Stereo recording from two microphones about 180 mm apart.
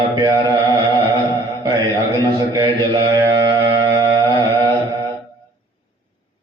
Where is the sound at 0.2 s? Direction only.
20° right (ahead or behind).